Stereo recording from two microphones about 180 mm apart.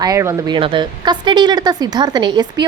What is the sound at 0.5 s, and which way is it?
A woman's voice, 25° right (ahead or behind).